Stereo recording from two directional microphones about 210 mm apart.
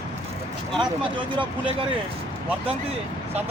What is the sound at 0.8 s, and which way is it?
Speech, 25° right (ahead or behind).